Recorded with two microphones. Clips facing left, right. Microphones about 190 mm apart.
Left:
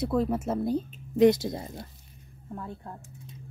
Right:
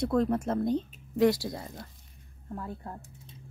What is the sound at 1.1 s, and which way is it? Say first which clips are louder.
Speech: left 4 dB; 20° left (ahead or behind).